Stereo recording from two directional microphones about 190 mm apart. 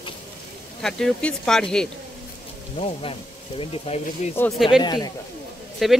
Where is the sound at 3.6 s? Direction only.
35° left (ahead or behind).